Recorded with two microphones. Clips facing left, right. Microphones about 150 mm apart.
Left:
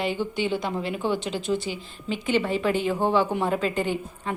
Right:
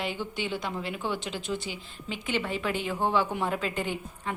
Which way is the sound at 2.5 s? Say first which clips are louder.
Left 6 dB; 40° left (ahead or behind).